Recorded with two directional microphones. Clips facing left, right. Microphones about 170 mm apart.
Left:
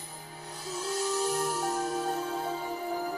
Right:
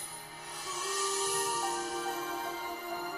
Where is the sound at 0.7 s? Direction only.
35° left (ahead or behind).